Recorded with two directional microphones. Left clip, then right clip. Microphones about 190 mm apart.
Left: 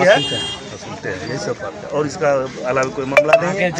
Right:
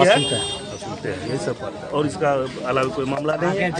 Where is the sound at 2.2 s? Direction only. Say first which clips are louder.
Left 5 dB; 5° right (ahead or behind).